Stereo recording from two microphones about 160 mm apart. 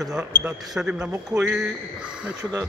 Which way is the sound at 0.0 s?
5° right (ahead or behind).